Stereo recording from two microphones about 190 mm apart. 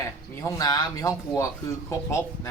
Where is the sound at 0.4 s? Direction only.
20° left (ahead or behind).